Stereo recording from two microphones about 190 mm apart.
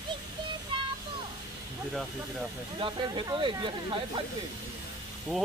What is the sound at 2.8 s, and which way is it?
Speech, 25° right (ahead or behind).